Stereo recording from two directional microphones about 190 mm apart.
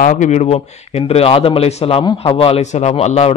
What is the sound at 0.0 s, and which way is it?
Speech, 45° left (ahead or behind).